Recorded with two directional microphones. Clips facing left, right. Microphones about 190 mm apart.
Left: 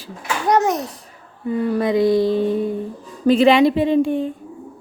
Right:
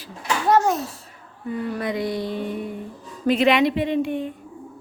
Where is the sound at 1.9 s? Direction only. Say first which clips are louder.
Left 10 dB; 90° left.